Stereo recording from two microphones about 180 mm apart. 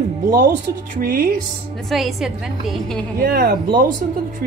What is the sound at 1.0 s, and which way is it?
Speech, 55° right (ahead or behind).